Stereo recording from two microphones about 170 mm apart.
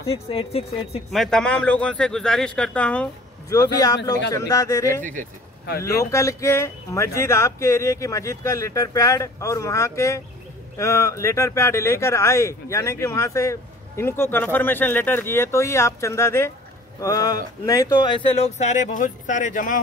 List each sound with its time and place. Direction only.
0.1 s speech: 35° left (ahead or behind)
1.1 s a man's voice: centre (ahead or behind)
3.4 s speech: 20° left (ahead or behind)
5.9 s speech: 20° left (ahead or behind); by 19.8 s 50° left (ahead or behind)